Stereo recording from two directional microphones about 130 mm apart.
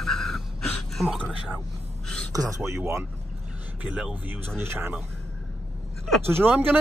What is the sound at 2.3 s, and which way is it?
Speech, 25° right (ahead or behind).